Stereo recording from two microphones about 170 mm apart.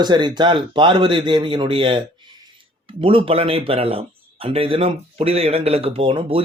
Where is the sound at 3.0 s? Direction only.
30° right (ahead or behind).